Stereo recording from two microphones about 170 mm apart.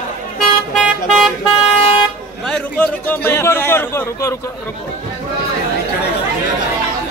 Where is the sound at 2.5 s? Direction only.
10° left (ahead or behind).